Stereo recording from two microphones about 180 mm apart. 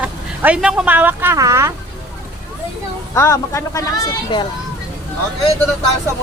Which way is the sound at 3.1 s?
15° left (ahead or behind).